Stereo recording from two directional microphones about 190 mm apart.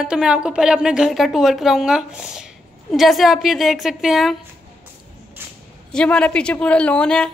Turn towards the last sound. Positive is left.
turn(degrees=5)  # may be behind; listen again after turning